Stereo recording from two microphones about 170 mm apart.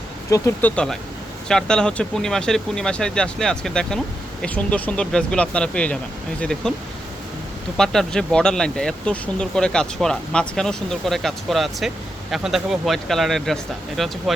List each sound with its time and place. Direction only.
0.3 s speech: 20° left (ahead or behind)
1.5 s speech: 5° left (ahead or behind)
7.8 s speech: 5° left (ahead or behind)